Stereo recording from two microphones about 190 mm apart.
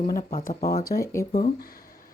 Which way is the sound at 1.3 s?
40° left (ahead or behind).